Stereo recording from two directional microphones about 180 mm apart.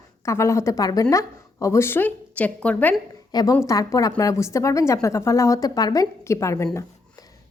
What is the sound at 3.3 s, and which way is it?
Speech, 20° left (ahead or behind).